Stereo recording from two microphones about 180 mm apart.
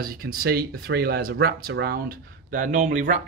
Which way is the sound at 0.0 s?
55° right (ahead or behind).